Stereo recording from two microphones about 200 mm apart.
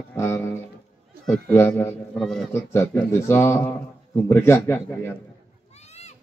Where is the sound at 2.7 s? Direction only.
10° left (ahead or behind).